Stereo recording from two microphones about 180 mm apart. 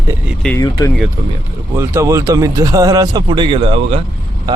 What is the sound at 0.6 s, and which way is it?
Speech, 20° left (ahead or behind).